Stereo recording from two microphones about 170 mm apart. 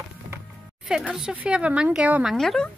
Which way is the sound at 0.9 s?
Centre (ahead or behind).